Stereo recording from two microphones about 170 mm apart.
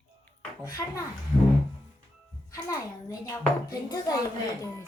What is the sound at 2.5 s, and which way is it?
A child's voice, 20° left (ahead or behind).